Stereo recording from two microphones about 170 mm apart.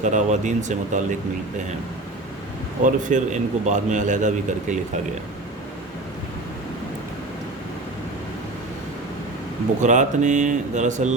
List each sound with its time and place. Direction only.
0.0 s a man's voice: 45° right (ahead or behind)
2.8 s a man's voice: 50° right (ahead or behind)
9.8 s a man's voice: 45° right (ahead or behind)